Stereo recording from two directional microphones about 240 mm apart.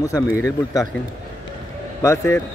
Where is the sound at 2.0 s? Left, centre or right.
Centre.